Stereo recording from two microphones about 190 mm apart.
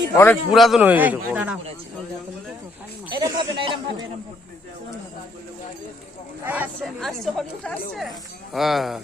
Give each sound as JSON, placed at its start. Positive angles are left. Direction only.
{"t": 0.1, "sound": "a man's voice", "side_deg": 15}
{"t": 0.5, "sound": "a man's voice", "side_deg": 0}
{"t": 3.1, "sound": "speech", "side_deg": -20}
{"t": 6.4, "sound": "speech", "side_deg": -10}